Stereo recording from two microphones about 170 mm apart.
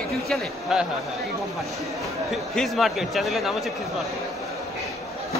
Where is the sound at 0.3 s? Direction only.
Centre (ahead or behind).